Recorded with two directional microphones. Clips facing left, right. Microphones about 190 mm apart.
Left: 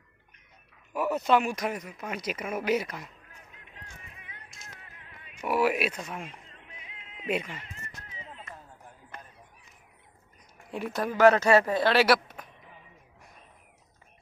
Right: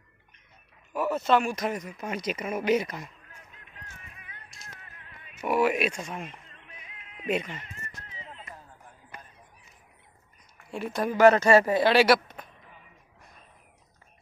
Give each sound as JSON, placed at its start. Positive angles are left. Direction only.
{"t": 0.9, "sound": "a man's voice", "side_deg": 15}
{"t": 3.7, "sound": "music", "side_deg": 20}
{"t": 5.5, "sound": "a man's voice", "side_deg": 5}
{"t": 7.0, "sound": "cat", "side_deg": 25}
{"t": 7.2, "sound": "a man's voice", "side_deg": 10}
{"t": 10.7, "sound": "speech", "side_deg": 15}
{"t": 11.0, "sound": "speech", "side_deg": 0}